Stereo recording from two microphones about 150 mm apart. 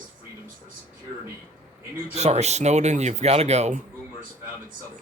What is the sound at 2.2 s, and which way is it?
Speech, 45° right (ahead or behind).